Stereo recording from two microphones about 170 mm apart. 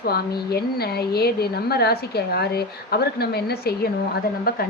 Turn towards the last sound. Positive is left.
turn(degrees=65)  # may be behind; listen again after turning